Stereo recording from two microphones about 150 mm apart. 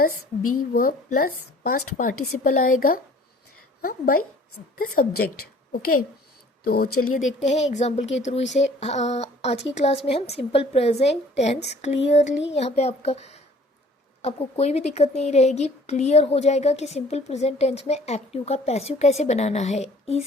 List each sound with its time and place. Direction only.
0.7 s a woman's voice: 75° left (ahead or behind)
5.7 s a child's voice: 85° left
7.2 s a woman's voice: 50° left (ahead or behind)